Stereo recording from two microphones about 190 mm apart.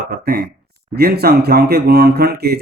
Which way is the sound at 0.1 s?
50° right (ahead or behind).